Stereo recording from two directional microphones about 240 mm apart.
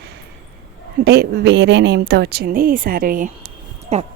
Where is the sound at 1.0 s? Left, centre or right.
Right.